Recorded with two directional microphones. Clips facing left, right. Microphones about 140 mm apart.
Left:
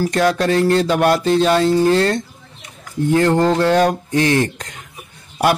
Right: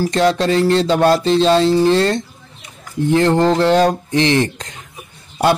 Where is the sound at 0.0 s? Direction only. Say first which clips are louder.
Right 1 dB; 25° right (ahead or behind).